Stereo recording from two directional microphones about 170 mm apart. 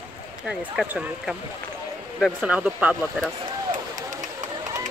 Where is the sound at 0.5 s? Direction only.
5° right (ahead or behind).